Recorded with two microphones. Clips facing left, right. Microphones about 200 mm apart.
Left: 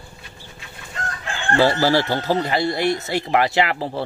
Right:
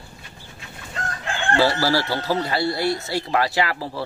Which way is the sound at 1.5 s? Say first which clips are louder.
Left 3 dB; 20° left (ahead or behind).